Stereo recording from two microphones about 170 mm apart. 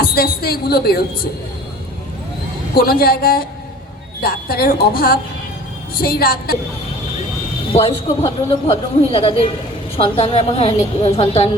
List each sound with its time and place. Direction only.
0.0 s a woman's voice: 60° left (ahead or behind)
2.7 s a woman's voice: 65° left (ahead or behind)
7.7 s a woman's voice: 35° left (ahead or behind)